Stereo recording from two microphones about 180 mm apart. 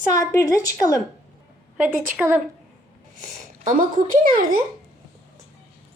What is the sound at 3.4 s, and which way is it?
Speech, 45° right (ahead or behind).